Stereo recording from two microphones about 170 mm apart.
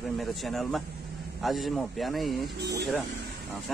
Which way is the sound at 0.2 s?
Centre (ahead or behind).